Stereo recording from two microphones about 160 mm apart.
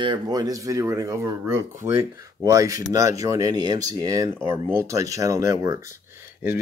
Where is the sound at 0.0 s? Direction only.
25° right (ahead or behind).